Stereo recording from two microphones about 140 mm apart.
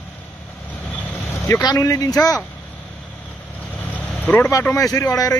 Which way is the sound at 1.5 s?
25° left (ahead or behind).